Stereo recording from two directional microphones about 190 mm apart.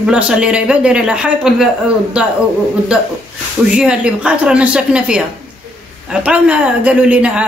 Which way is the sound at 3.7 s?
5° right (ahead or behind).